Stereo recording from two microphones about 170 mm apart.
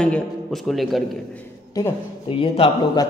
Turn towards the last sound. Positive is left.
turn(degrees=30)  # may be behind; listen again after turning